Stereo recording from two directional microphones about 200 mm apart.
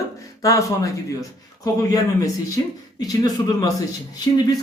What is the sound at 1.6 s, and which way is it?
A man's voice, 15° left (ahead or behind).